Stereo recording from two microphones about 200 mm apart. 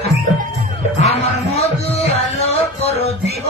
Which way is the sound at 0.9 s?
30° left (ahead or behind).